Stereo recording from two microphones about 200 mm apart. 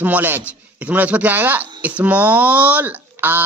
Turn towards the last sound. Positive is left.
turn(degrees=-10)  # may be behind; listen again after turning